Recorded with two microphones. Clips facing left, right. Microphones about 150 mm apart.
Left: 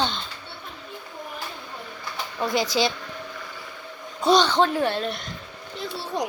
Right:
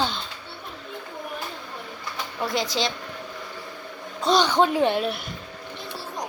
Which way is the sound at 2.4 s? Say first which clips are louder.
Left 3 dB; centre (ahead or behind).